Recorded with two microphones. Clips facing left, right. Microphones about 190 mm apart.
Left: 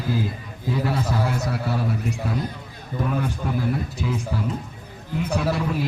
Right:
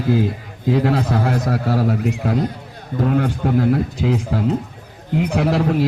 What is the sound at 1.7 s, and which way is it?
Speech, 90° right.